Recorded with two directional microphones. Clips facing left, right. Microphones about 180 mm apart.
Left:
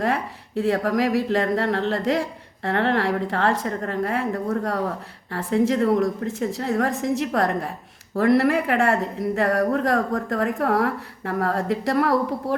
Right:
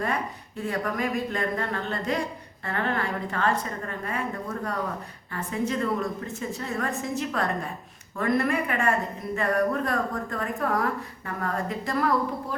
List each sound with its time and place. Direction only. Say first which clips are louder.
0.0 s speech: left 5 dB; 85° left
5.3 s speech: left 8 dB; 80° left